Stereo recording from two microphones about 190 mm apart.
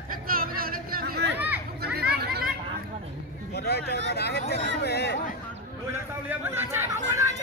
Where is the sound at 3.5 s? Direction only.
60° left (ahead or behind).